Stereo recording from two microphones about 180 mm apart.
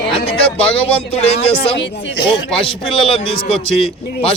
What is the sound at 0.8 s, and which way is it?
Speech, 35° left (ahead or behind).